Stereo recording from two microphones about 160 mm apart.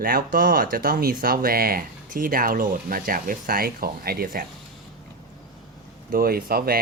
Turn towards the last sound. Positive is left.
turn(degrees=-70)  # may be behind; listen again after turning